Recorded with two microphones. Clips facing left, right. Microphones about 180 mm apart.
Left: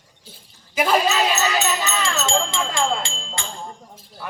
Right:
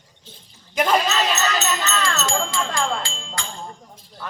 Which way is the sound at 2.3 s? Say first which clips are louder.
Left 1 dB; 25° left (ahead or behind).